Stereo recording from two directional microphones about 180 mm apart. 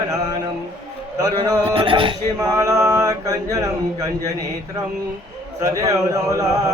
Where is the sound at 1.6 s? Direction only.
30° right (ahead or behind).